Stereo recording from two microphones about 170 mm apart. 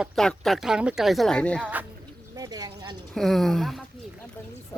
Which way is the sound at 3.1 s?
Centre (ahead or behind).